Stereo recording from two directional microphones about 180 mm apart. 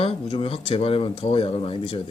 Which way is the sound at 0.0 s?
30° left (ahead or behind).